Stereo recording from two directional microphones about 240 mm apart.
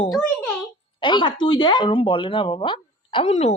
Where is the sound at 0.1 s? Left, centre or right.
Centre.